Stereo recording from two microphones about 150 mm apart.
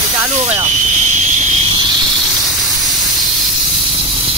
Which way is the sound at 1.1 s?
55° right (ahead or behind).